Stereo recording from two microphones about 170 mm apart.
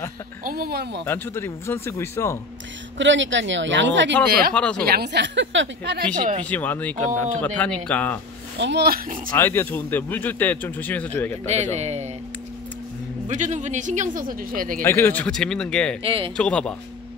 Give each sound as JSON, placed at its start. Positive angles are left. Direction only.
{"t": 0.5, "sound": "speech", "side_deg": -65}
{"t": 1.0, "sound": "a man's voice", "side_deg": 10}
{"t": 3.0, "sound": "speech", "side_deg": -90}
{"t": 4.6, "sound": "speech", "side_deg": 5}
{"t": 4.8, "sound": "speech", "side_deg": -70}
{"t": 6.1, "sound": "a man's voice", "side_deg": -50}
{"t": 6.5, "sound": "a man's voice", "side_deg": 10}
{"t": 8.5, "sound": "speech", "side_deg": -85}
{"t": 9.4, "sound": "a man's voice", "side_deg": 10}
{"t": 11.4, "sound": "speech", "side_deg": -40}
{"t": 13.3, "sound": "a man's voice", "side_deg": -45}
{"t": 14.8, "sound": "speech", "side_deg": 15}
{"t": 16.0, "sound": "speech", "side_deg": -35}
{"t": 16.3, "sound": "speech", "side_deg": 5}